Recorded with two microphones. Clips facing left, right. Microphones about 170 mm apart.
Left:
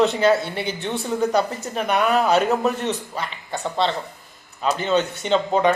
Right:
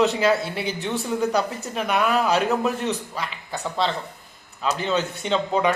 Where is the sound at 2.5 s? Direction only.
Centre (ahead or behind).